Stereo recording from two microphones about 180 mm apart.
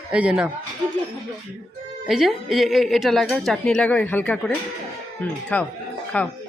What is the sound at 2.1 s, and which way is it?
A woman's voice, centre (ahead or behind).